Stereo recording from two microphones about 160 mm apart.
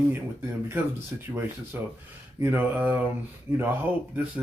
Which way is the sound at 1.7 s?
10° right (ahead or behind).